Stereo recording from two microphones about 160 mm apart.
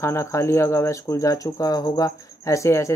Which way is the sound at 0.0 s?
15° left (ahead or behind).